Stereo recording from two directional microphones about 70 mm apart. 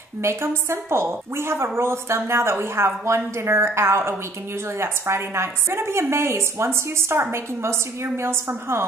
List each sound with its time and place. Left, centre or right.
0.2 s a woman's voice: right